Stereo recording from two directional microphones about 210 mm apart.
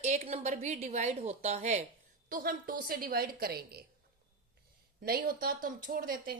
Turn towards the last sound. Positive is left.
turn(degrees=-40)  # may be behind; listen again after turning